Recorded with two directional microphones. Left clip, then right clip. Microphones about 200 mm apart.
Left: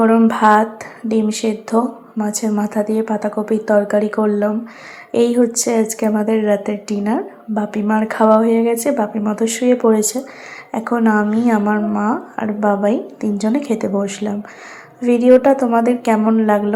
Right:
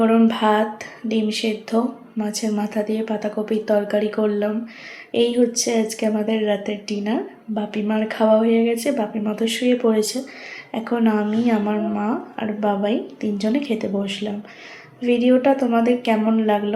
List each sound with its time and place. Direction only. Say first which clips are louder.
0.0 s a woman's voice: left 5 dB; 10° left (ahead or behind)